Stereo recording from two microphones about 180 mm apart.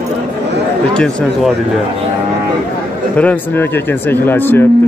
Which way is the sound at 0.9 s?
5° left (ahead or behind).